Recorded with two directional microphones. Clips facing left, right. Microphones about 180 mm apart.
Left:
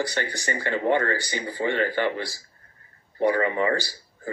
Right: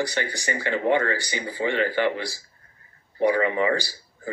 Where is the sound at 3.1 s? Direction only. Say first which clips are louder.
Right 1 dB; 15° right (ahead or behind).